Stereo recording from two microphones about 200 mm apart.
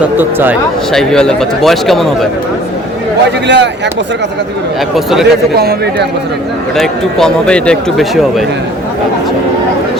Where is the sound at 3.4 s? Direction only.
60° right (ahead or behind).